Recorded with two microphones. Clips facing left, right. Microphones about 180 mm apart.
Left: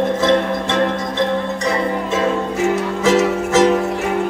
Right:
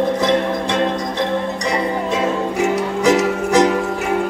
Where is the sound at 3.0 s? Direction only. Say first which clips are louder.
Even; 15° right (ahead or behind).